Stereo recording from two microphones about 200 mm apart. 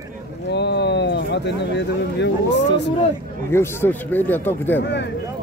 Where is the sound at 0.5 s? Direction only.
55° left (ahead or behind).